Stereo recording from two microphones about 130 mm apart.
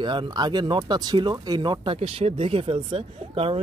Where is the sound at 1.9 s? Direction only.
50° right (ahead or behind).